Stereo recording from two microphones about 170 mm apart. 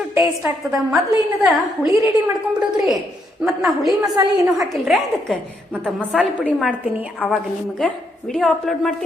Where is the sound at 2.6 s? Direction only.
5° right (ahead or behind).